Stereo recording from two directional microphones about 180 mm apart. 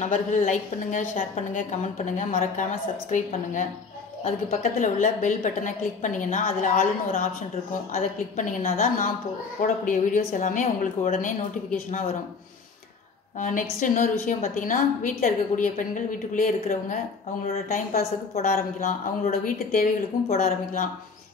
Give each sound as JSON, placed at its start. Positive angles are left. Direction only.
{"t": 0.0, "sound": "a woman's voice", "side_deg": 45}
{"t": 7.9, "sound": "a woman's voice", "side_deg": 50}
{"t": 13.4, "sound": "a woman's voice", "side_deg": 45}
{"t": 18.4, "sound": "a woman's voice", "side_deg": 40}